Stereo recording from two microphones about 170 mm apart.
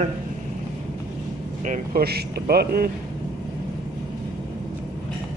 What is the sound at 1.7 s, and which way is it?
Speech, 65° right (ahead or behind).